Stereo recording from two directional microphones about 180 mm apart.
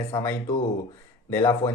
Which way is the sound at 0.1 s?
15° left (ahead or behind).